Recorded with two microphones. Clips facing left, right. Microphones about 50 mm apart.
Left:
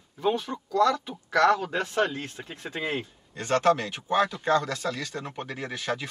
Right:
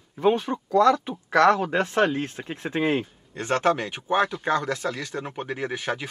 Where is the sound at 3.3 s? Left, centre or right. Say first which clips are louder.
Even; right.